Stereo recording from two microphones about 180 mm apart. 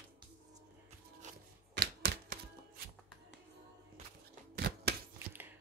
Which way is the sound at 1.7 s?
65° right (ahead or behind).